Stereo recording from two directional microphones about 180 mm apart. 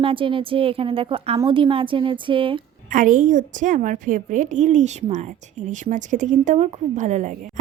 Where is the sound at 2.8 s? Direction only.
45° right (ahead or behind).